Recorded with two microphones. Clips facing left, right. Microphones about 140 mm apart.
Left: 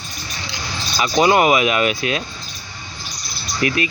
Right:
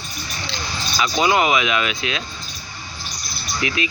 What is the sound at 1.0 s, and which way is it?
Speech, 40° left (ahead or behind).